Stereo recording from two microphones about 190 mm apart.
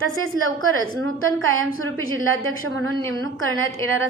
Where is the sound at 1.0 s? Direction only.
90° right.